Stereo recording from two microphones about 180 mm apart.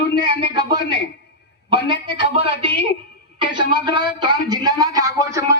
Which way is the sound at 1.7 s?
25° right (ahead or behind).